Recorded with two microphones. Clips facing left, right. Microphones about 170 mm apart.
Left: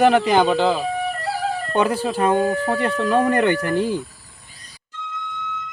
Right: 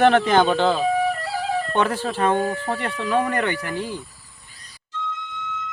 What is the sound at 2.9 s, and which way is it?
Speech, 45° left (ahead or behind).